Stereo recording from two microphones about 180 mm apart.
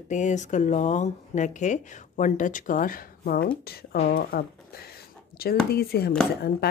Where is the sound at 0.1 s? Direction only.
40° left (ahead or behind).